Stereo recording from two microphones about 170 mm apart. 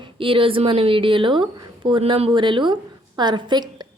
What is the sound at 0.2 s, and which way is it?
A woman's voice, 30° right (ahead or behind).